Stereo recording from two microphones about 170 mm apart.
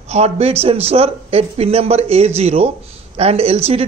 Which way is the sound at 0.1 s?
40° right (ahead or behind).